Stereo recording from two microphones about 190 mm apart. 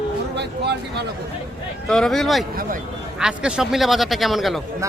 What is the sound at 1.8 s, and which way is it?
A man's voice, centre (ahead or behind).